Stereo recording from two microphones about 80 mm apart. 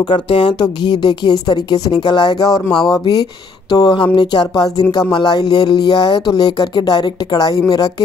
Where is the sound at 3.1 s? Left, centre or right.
Left.